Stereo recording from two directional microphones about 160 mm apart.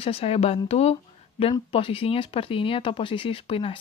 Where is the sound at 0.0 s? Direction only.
40° left (ahead or behind).